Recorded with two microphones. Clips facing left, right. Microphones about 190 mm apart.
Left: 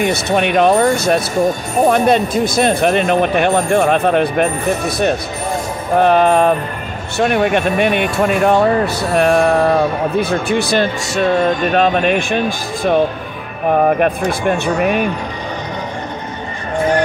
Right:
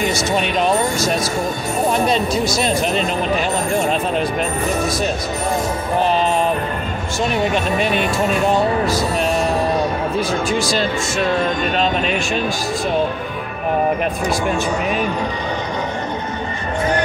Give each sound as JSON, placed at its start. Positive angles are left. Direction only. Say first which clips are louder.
{"t": 0.0, "sound": "speech", "louder": "left 4 dB", "side_deg": 60}
{"t": 14.6, "sound": "speech", "louder": "left 4 dB", "side_deg": 60}